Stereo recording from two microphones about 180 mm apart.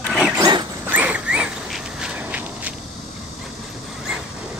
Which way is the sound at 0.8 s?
10° right (ahead or behind).